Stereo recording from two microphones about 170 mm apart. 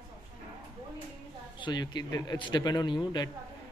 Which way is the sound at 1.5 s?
25° left (ahead or behind).